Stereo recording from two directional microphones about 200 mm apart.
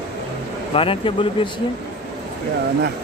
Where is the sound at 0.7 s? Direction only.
25° left (ahead or behind).